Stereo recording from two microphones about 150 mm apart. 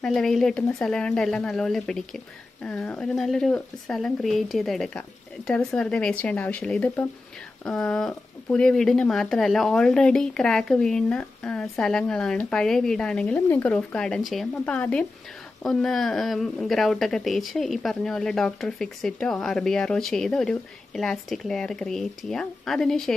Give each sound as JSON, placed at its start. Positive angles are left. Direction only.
{"t": 0.0, "sound": "speech", "side_deg": 0}